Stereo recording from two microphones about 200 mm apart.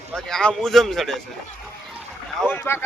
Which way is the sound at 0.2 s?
5° left (ahead or behind).